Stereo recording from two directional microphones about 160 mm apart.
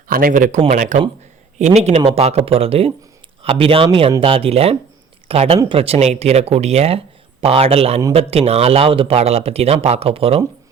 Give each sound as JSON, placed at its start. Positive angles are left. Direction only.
{"t": 0.1, "sound": "speech", "side_deg": -60}